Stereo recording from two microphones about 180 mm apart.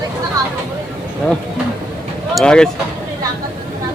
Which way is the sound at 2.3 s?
5° left (ahead or behind).